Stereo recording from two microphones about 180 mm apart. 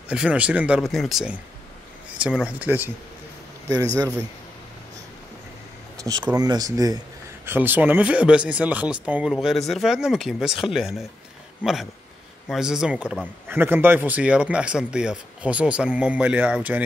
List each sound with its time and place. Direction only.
0.1 s speech: 5° right (ahead or behind)
5.9 s a sound: 20° right (ahead or behind)
6.3 s speech: 20° right (ahead or behind)